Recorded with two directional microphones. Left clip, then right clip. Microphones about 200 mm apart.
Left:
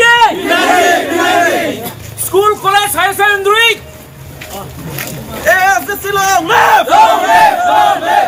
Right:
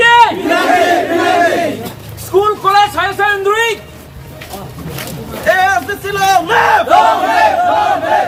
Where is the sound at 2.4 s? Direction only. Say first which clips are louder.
Even; centre (ahead or behind).